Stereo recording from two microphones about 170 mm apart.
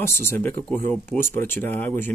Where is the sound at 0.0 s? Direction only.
15° left (ahead or behind).